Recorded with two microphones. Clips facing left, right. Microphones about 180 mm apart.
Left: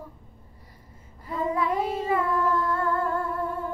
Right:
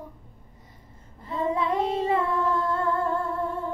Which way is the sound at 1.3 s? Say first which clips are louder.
Right 1 dB; 25° right (ahead or behind).